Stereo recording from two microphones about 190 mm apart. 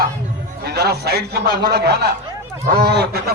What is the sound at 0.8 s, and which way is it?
A man's voice, 55° right (ahead or behind).